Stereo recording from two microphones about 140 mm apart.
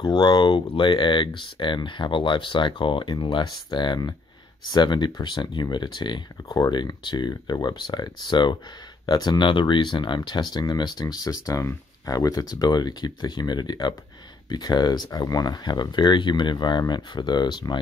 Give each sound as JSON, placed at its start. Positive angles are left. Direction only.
{"t": 0.0, "sound": "speech", "side_deg": 35}